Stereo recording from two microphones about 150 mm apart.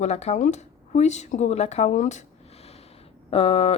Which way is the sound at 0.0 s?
50° left (ahead or behind).